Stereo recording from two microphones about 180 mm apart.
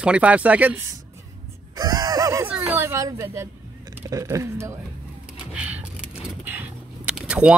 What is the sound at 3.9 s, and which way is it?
Speech, 15° right (ahead or behind).